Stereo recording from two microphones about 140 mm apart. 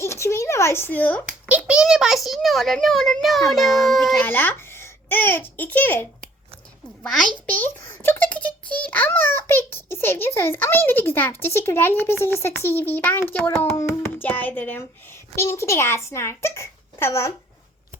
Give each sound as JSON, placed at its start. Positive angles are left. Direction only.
{"t": 0.0, "sound": "a sound", "side_deg": 20}
{"t": 1.2, "sound": "a child's voice", "side_deg": -10}
{"t": 4.3, "sound": "a child's voice", "side_deg": 15}
{"t": 7.5, "sound": "a child's voice", "side_deg": 15}